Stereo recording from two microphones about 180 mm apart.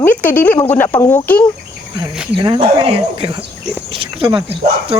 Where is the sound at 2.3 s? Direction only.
30° right (ahead or behind).